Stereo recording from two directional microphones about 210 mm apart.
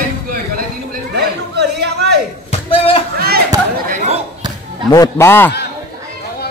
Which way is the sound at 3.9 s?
35° right (ahead or behind).